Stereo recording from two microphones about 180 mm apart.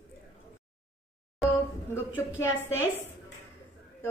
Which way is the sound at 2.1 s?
10° left (ahead or behind).